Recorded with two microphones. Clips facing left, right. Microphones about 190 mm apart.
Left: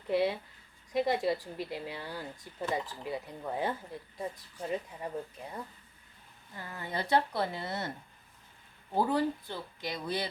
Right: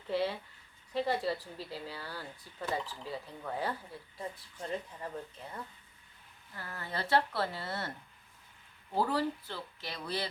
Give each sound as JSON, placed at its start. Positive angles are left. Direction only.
{"t": 0.1, "sound": "speech", "side_deg": 15}
{"t": 9.0, "sound": "speech", "side_deg": 15}